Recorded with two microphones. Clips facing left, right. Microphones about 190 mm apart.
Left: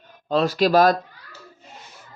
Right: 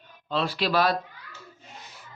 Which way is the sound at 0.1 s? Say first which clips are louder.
Left 7 dB; 45° left (ahead or behind).